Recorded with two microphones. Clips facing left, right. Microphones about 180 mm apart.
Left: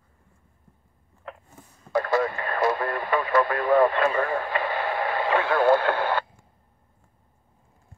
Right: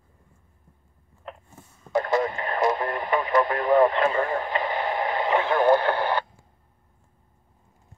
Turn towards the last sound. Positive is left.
turn(degrees=-15)  # may be behind; listen again after turning